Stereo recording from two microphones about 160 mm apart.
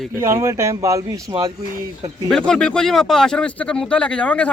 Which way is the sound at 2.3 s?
5° left (ahead or behind).